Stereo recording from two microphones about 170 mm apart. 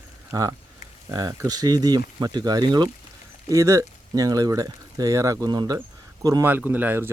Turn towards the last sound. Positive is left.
turn(degrees=-10)  # may be behind; listen again after turning